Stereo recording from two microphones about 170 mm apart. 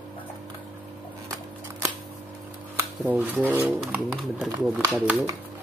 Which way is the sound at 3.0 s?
10° right (ahead or behind).